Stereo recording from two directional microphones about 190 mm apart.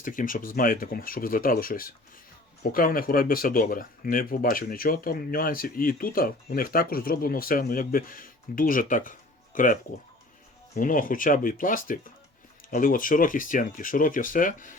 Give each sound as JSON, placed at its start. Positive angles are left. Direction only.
{"t": 0.0, "sound": "speech", "side_deg": 45}
{"t": 10.8, "sound": "speech", "side_deg": 45}